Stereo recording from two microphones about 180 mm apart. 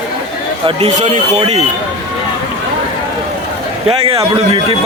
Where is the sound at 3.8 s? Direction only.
30° right (ahead or behind).